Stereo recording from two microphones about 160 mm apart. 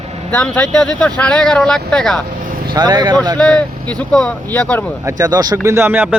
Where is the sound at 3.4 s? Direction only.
5° left (ahead or behind).